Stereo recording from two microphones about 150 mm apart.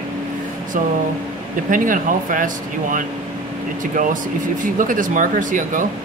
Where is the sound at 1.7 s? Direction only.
60° right (ahead or behind).